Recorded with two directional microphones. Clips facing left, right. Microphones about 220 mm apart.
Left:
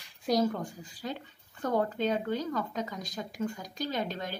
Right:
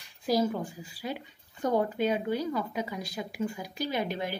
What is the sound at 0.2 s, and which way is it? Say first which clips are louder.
Speech: right 1 dB; 5° right (ahead or behind).